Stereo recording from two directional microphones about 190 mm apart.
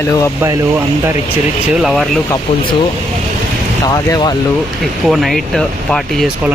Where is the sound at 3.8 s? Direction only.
20° left (ahead or behind).